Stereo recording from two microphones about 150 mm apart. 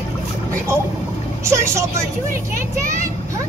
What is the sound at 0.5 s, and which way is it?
Vehicle, 15° right (ahead or behind).